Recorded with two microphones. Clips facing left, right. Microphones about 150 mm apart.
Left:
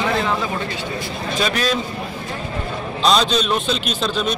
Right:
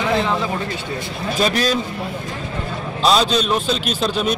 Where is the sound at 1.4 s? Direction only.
40° right (ahead or behind).